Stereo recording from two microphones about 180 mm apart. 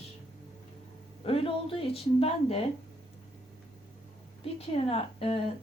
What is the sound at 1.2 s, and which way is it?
A woman's voice, 30° left (ahead or behind).